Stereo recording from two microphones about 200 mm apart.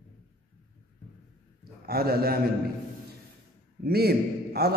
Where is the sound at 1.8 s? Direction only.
50° right (ahead or behind).